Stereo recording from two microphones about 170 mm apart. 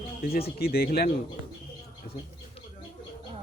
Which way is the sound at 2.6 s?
35° left (ahead or behind).